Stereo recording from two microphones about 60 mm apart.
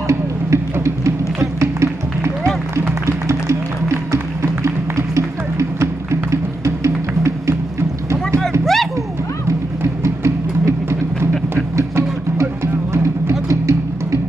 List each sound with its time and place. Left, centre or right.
0.1 s music: right
8.4 s music: centre
10.0 s music: right
13.3 s music: right